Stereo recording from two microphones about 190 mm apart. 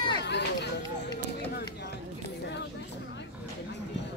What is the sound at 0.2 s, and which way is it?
Run, 65° left (ahead or behind).